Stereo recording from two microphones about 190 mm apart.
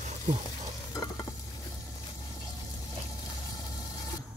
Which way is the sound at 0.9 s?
15° left (ahead or behind).